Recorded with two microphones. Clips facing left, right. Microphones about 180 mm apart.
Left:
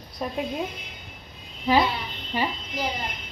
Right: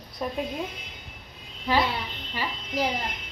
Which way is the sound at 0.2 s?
Centre (ahead or behind).